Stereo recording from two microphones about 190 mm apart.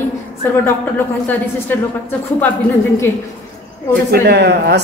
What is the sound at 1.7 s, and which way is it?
Speech, 10° left (ahead or behind).